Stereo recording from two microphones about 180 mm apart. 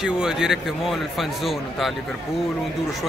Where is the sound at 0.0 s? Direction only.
5° right (ahead or behind).